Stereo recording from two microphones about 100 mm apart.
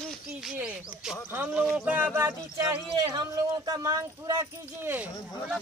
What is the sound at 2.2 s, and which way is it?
Speech, 25° right (ahead or behind).